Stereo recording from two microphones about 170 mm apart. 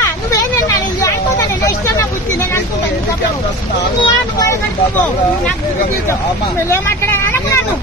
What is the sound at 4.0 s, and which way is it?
Speech, 20° left (ahead or behind).